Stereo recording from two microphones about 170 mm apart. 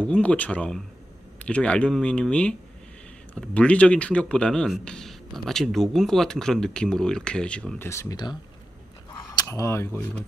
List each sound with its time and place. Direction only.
0.0 s speech: 5° left (ahead or behind)
7.9 s speech: 20° left (ahead or behind)